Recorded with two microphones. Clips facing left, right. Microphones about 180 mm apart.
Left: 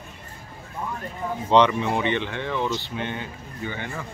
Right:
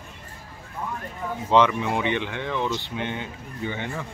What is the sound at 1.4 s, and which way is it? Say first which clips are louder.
Speech: left 1 dB; 5° right (ahead or behind).